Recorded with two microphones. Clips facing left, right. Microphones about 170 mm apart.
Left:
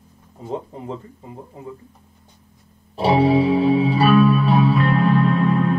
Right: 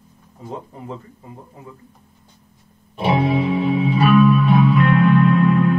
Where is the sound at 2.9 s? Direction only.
35° left (ahead or behind).